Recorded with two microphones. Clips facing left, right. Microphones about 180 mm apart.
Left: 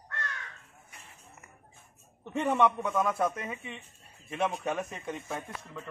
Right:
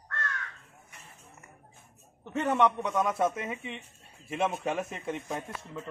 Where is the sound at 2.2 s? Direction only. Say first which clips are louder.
Even; 10° left (ahead or behind); by 5.8 s 5° right (ahead or behind).